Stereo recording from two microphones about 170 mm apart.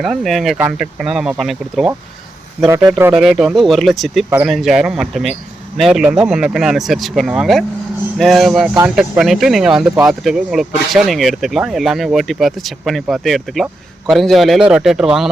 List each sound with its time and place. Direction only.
0.0 s speech: centre (ahead or behind)
2.6 s speech: 15° right (ahead or behind)
3.2 s speech: 5° right (ahead or behind)